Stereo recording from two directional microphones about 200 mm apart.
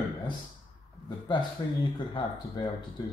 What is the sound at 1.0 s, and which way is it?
Speech, 25° left (ahead or behind).